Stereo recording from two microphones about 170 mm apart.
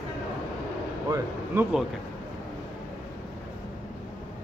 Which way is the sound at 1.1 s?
15° right (ahead or behind).